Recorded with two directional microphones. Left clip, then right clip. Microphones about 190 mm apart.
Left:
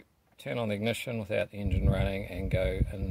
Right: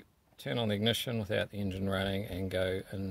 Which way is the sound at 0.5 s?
20° right (ahead or behind).